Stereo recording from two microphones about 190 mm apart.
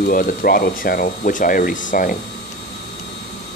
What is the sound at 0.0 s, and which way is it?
Speech, 50° left (ahead or behind).